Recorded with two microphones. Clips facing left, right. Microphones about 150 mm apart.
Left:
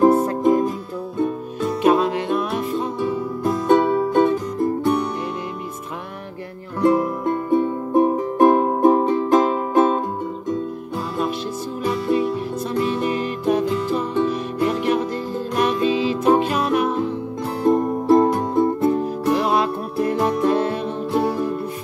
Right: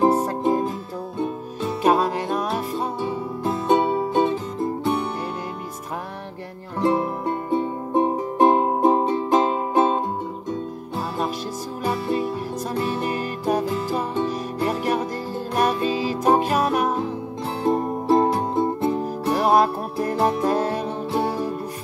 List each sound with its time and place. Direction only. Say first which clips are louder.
0.0 s music: left 4 dB; 35° right (ahead or behind)
6.8 s music: left 4 dB; 30° right (ahead or behind)
11.8 s music: left 3 dB; 30° right (ahead or behind)
18.1 s music: left 3 dB; 25° right (ahead or behind)
19.2 s music: right 2 dB; 40° right (ahead or behind)